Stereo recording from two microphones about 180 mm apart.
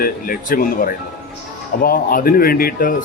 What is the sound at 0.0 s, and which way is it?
Speech, 55° left (ahead or behind).